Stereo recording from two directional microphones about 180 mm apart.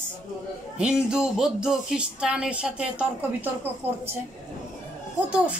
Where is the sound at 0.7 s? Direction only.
5° right (ahead or behind).